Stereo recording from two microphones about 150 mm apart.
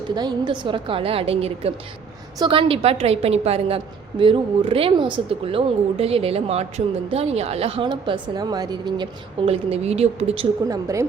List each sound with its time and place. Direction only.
0.1 s speech: 30° right (ahead or behind)
9.5 s a woman's voice: 40° right (ahead or behind)
10.7 s a woman's voice: 25° right (ahead or behind)